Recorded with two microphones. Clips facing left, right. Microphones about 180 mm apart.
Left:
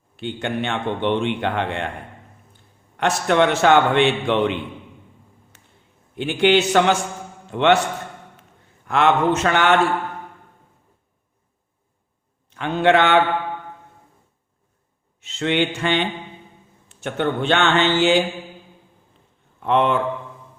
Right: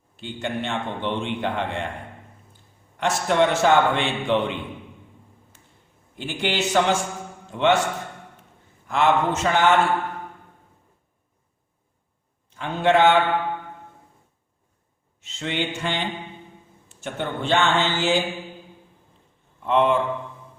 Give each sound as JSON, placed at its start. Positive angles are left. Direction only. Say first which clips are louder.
{"t": 0.2, "sound": "a man's voice", "louder": "left 4 dB", "side_deg": 65}
{"t": 3.0, "sound": "a man's voice", "louder": "left 2 dB", "side_deg": 65}
{"t": 6.1, "sound": "a man's voice", "louder": "left 9 dB", "side_deg": 65}
{"t": 8.9, "sound": "a man's voice", "louder": "left 3 dB", "side_deg": 65}
{"t": 12.5, "sound": "a man's voice", "louder": "left 2 dB", "side_deg": 70}
{"t": 15.2, "sound": "a man's voice", "louder": "left 7 dB", "side_deg": 70}
{"t": 19.6, "sound": "a man's voice", "louder": "left 1 dB", "side_deg": 65}